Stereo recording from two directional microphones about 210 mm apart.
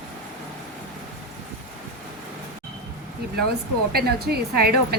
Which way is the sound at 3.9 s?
50° right (ahead or behind).